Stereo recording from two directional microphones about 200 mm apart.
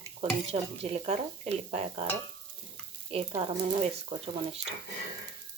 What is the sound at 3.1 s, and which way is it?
Speech, 30° right (ahead or behind).